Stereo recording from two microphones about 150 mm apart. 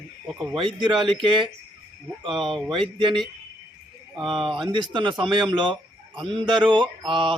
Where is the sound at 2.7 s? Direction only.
35° right (ahead or behind).